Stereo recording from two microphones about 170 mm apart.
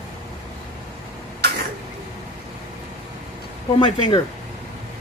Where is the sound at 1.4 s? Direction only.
70° right (ahead or behind).